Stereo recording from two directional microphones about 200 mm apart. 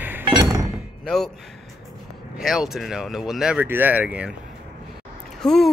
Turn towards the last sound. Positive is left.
turn(degrees=0)  # may be behind; listen again after turning